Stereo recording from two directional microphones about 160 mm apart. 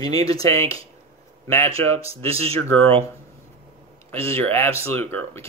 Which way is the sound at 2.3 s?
35° right (ahead or behind).